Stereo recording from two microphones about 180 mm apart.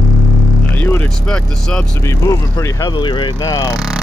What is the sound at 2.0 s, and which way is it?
Speech, 15° left (ahead or behind).